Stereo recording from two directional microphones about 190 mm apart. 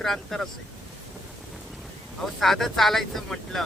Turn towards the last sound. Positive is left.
turn(degrees=0)  # may be behind; listen again after turning